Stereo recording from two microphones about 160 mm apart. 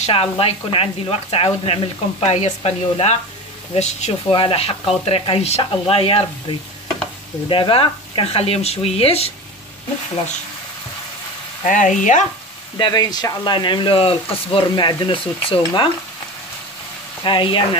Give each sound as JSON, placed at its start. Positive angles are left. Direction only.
{"t": 0.0, "sound": "speech", "side_deg": 35}
{"t": 7.4, "sound": "speech", "side_deg": 30}
{"t": 11.6, "sound": "speech", "side_deg": 55}
{"t": 12.7, "sound": "speech", "side_deg": 25}
{"t": 17.2, "sound": "speech", "side_deg": 30}